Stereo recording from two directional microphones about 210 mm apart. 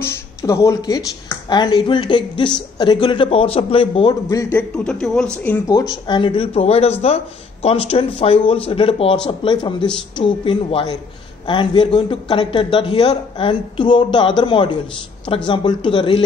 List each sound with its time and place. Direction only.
0.4 s a man's voice: 15° left (ahead or behind)